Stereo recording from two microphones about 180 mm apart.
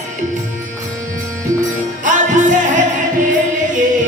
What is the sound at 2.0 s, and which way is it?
Music, 45° right (ahead or behind).